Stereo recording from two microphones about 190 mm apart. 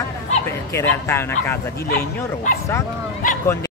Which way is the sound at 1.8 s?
55° left (ahead or behind).